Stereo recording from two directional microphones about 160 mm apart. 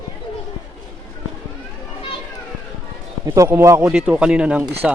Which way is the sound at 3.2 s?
20° right (ahead or behind).